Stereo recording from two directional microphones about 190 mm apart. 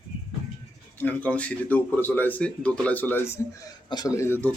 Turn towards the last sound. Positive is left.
turn(degrees=10)  # may be behind; listen again after turning